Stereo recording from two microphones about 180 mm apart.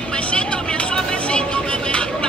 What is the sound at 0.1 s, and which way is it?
Music, 5° left (ahead or behind).